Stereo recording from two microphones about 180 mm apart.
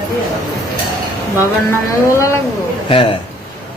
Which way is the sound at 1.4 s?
15° left (ahead or behind).